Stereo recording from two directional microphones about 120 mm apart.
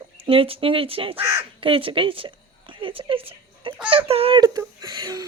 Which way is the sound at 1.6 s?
50° right (ahead or behind).